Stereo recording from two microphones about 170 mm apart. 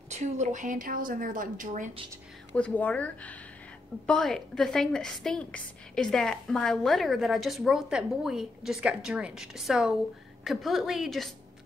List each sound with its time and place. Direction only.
0.1 s a woman's voice: 45° right (ahead or behind)
2.5 s a woman's voice: 10° left (ahead or behind)